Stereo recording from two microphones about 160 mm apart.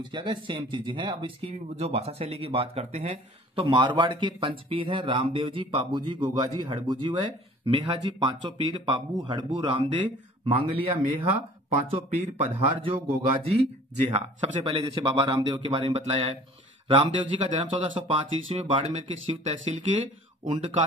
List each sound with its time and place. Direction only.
0.1 s speech: 30° right (ahead or behind)
3.5 s speech: 30° right (ahead or behind)
12.8 s speech: 40° right (ahead or behind)